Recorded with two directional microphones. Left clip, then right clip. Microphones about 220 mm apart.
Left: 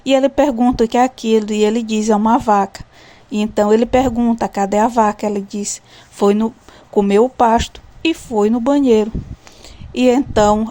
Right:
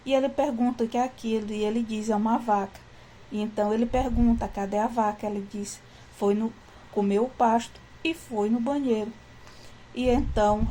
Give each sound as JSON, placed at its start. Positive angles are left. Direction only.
{"t": 0.0, "sound": "speech", "side_deg": 45}